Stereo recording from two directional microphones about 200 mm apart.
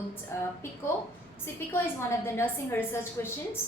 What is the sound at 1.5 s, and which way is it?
A woman's voice, 10° left (ahead or behind).